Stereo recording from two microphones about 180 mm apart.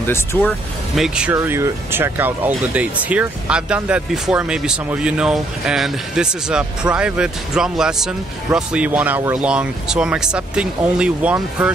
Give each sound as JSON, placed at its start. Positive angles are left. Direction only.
{"t": 0.0, "sound": "speech", "side_deg": 10}
{"t": 0.5, "sound": "speech", "side_deg": 0}